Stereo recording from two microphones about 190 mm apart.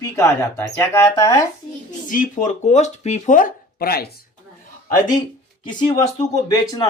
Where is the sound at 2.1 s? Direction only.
45° left (ahead or behind).